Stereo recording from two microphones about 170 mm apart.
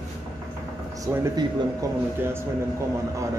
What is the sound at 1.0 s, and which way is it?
Speech, 20° right (ahead or behind).